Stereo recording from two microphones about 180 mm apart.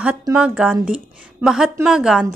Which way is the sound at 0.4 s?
5° right (ahead or behind).